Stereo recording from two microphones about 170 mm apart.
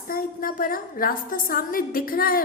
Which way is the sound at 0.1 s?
55° left (ahead or behind).